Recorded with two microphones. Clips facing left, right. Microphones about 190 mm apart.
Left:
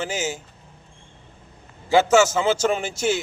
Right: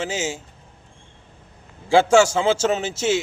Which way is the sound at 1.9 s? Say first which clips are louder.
Right 1 dB; 30° right (ahead or behind).